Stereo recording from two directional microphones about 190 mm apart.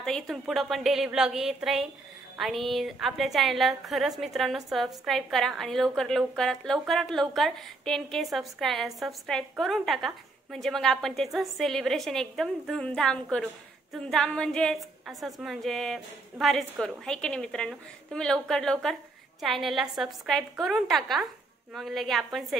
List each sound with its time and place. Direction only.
0.0 s a woman's voice: centre (ahead or behind)